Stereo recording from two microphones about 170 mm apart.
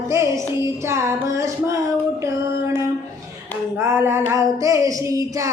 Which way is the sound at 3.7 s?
15° right (ahead or behind).